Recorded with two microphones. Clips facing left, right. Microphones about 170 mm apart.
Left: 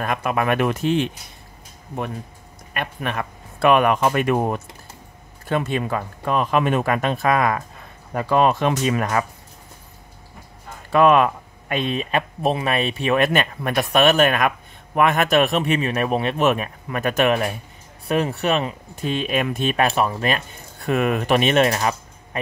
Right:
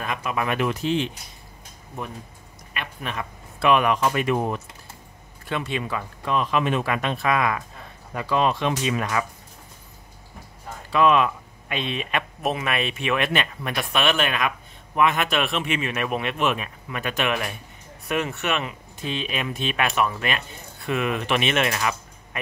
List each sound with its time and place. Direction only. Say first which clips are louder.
0.0 s speech: left 5 dB; 55° left (ahead or behind)
2.7 s speech: left 5 dB; 55° left (ahead or behind)
10.9 s speech: left 4 dB; 50° left (ahead or behind); by 18.8 s 35° left (ahead or behind)
18.9 s speech: left 6 dB; 45° left (ahead or behind)